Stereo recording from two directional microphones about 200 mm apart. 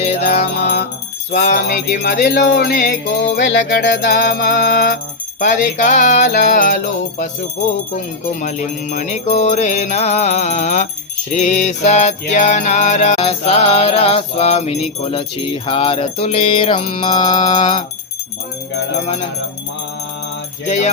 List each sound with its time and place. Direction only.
0.0 s music: 30° left (ahead or behind)
2.0 s jingle bell: 55° left (ahead or behind)
3.8 s music: 45° left (ahead or behind)
7.9 s music: 40° left (ahead or behind); by 17.8 s 20° left (ahead or behind)
20.7 s music: 35° left (ahead or behind)